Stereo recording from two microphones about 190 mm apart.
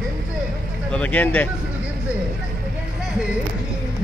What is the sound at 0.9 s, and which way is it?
Speech, 10° left (ahead or behind).